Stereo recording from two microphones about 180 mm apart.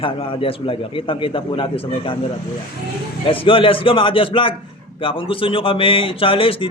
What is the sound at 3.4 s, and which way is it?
Speech, 30° left (ahead or behind).